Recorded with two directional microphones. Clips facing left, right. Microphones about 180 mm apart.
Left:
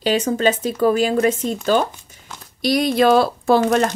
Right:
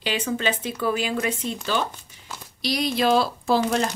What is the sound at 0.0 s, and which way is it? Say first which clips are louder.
Speech: left 8 dB; 40° left (ahead or behind).